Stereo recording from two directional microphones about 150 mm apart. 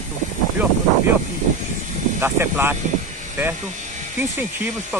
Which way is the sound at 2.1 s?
15° right (ahead or behind).